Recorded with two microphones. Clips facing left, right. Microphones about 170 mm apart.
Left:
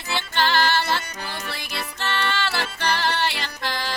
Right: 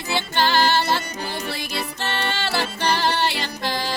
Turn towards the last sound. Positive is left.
turn(degrees=-30)  # may be behind; listen again after turning